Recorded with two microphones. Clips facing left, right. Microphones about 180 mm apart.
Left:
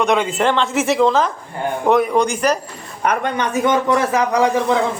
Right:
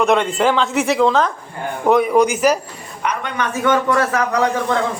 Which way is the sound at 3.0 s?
45° left (ahead or behind).